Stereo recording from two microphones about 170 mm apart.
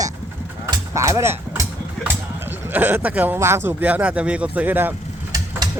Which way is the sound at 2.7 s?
10° right (ahead or behind).